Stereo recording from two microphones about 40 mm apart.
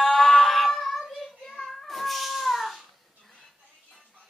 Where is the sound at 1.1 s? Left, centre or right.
Centre.